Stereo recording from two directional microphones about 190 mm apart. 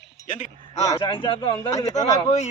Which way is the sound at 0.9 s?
25° left (ahead or behind).